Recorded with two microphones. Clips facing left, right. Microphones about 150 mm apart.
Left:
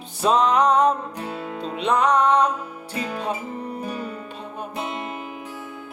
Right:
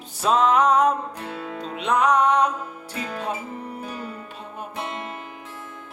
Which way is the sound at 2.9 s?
10° left (ahead or behind).